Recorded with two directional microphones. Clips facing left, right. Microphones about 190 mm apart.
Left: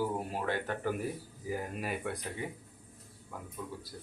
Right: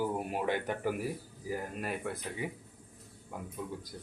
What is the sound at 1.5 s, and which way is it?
Speech, centre (ahead or behind).